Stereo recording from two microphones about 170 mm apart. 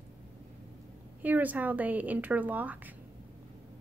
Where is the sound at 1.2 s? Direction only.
10° right (ahead or behind).